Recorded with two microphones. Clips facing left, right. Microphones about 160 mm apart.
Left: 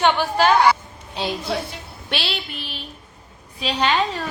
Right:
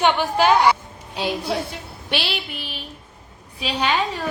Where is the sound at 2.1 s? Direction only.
10° right (ahead or behind).